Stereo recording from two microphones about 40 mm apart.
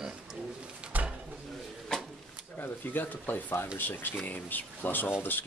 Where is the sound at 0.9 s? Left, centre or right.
Right.